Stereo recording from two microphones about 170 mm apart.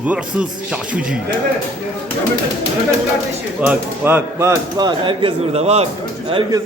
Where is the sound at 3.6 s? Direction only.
10° right (ahead or behind).